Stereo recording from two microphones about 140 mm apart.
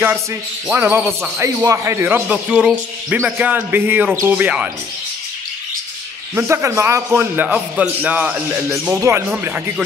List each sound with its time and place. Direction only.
0.7 s speech: 15° right (ahead or behind)
6.3 s speech: 20° right (ahead or behind)